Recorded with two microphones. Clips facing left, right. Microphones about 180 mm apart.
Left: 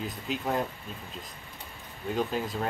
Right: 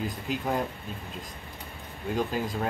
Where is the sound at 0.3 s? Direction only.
Centre (ahead or behind).